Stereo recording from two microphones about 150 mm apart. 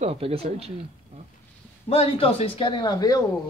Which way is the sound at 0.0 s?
40° right (ahead or behind).